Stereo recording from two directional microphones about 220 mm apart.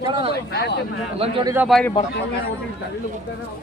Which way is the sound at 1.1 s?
25° right (ahead or behind).